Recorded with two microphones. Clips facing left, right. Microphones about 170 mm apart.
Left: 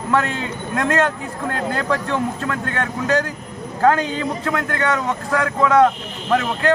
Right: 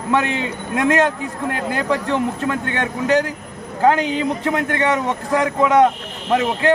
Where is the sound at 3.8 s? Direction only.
15° right (ahead or behind).